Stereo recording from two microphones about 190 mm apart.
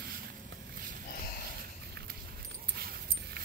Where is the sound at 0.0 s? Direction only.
50° right (ahead or behind).